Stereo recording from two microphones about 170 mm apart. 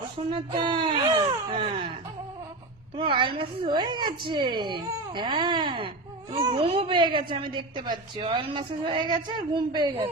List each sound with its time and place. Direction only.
0.2 s speech: 30° right (ahead or behind)
2.9 s a woman's voice: 30° right (ahead or behind)